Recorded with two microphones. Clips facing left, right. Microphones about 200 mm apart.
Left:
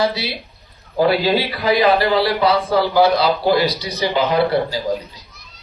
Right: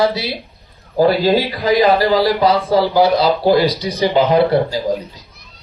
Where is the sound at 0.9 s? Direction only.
40° right (ahead or behind).